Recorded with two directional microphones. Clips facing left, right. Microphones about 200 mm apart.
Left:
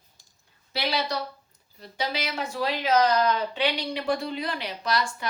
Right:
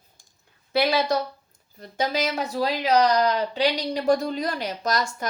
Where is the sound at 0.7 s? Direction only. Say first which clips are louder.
Right 7 dB; 50° right (ahead or behind).